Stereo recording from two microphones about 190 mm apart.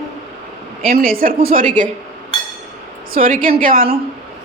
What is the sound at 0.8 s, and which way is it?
A woman's voice, 50° right (ahead or behind).